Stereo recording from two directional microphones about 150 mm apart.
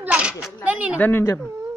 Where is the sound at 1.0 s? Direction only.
15° left (ahead or behind).